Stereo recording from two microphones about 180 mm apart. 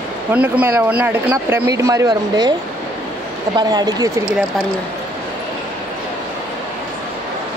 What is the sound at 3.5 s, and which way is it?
Speech, 20° right (ahead or behind).